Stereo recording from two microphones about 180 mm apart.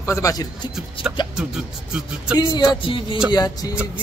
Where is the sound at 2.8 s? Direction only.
30° left (ahead or behind).